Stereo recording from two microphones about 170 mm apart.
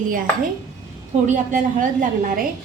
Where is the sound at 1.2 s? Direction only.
50° right (ahead or behind).